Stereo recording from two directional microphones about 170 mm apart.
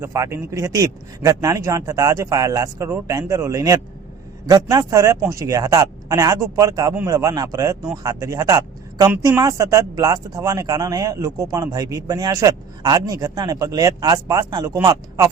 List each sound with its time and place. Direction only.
0.0 s speech: 15° right (ahead or behind)